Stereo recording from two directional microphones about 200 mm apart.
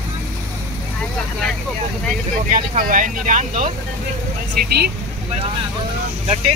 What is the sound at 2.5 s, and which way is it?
Speech, 40° right (ahead or behind).